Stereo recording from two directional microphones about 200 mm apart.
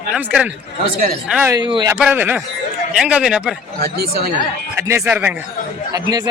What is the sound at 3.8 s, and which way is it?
Speech, 50° right (ahead or behind).